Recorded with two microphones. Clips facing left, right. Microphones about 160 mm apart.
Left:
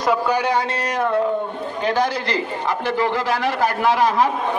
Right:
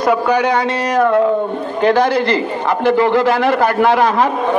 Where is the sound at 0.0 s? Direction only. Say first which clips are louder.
Right 5 dB; 60° right (ahead or behind); by 1.3 s 90° right.